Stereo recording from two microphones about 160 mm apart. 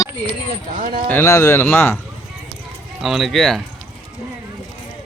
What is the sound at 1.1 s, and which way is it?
Speech, 15° left (ahead or behind).